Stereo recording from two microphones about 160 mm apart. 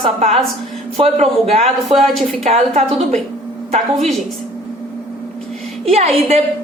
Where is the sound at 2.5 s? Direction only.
40° right (ahead or behind).